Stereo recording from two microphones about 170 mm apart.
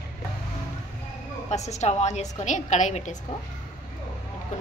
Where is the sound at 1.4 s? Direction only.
40° left (ahead or behind).